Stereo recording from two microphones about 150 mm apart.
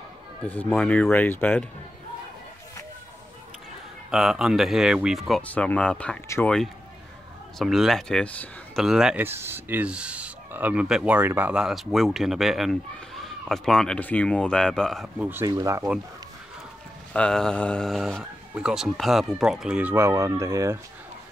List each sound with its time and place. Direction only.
0.4 s speech: 10° left (ahead or behind)
4.1 s speech: centre (ahead or behind)
5.4 s speech: 10° left (ahead or behind)
8.8 s speech: 5° right (ahead or behind)
9.2 s speech: 15° right (ahead or behind); by 15.0 s 5° left (ahead or behind)
15.1 s speech: 10° right (ahead or behind)
15.4 s speech: 25° right (ahead or behind)
17.1 s speech: 5° left (ahead or behind); by 20.8 s 20° right (ahead or behind)